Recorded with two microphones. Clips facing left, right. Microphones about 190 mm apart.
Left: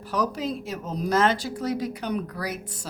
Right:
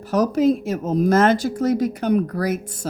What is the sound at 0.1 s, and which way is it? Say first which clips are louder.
Speech: right 10 dB; 45° right (ahead or behind).